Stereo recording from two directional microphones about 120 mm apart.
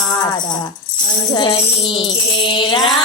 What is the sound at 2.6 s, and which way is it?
Music, 40° left (ahead or behind).